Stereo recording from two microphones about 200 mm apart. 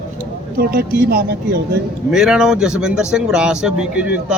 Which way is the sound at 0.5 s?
50° right (ahead or behind).